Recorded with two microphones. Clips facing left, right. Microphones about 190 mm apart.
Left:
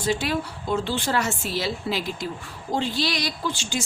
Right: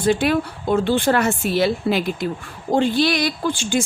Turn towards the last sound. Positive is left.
turn(degrees=-55)  # may be behind; listen again after turning